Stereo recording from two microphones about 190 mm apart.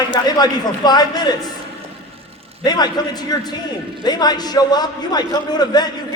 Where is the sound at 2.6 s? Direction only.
20° left (ahead or behind).